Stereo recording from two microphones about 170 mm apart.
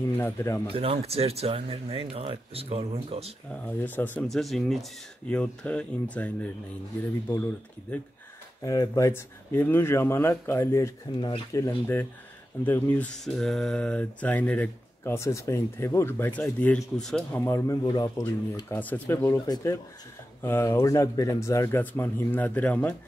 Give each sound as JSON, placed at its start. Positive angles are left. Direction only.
{"t": 0.2, "sound": "speech", "side_deg": 15}
{"t": 0.7, "sound": "speech", "side_deg": -35}
{"t": 3.6, "sound": "speech", "side_deg": 10}
{"t": 8.6, "sound": "speech", "side_deg": 20}
{"t": 11.1, "sound": "speech", "side_deg": 30}
{"t": 11.6, "sound": "speech", "side_deg": 15}
{"t": 17.5, "sound": "speech", "side_deg": 15}
{"t": 18.7, "sound": "speech", "side_deg": 10}